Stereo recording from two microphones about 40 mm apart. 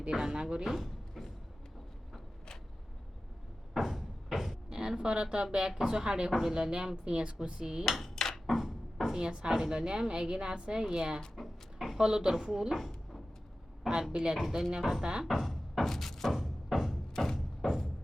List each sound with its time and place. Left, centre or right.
0.1 s a woman's voice: centre
0.8 s a sound: centre
3.8 s a sound: centre
4.7 s a woman's voice: centre
7.9 s dishes: centre
9.1 s speech: right
11.3 s a sound: centre
11.9 s a woman's voice: centre
14.1 s speech: right
14.8 s speech: centre
15.2 s music: centre
16.3 s music: centre
17.2 s thump: centre